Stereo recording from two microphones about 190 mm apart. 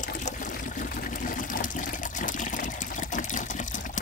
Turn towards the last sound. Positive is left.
turn(degrees=40)  # may be behind; listen again after turning